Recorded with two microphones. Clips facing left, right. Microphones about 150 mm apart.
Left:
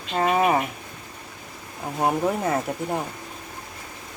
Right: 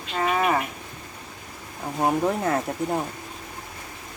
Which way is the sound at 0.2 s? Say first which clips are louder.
Left 3 dB; 20° left (ahead or behind).